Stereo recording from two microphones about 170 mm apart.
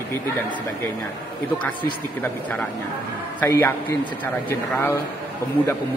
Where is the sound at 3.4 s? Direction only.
15° left (ahead or behind).